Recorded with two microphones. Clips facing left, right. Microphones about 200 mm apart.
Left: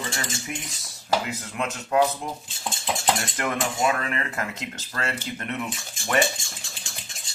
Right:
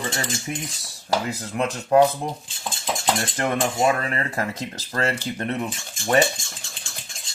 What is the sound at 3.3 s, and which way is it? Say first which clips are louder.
Cutlery: right 4 dB; 35° right (ahead or behind).